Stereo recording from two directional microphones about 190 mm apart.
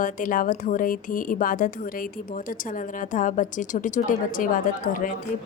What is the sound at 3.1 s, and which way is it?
A woman's voice, 45° left (ahead or behind).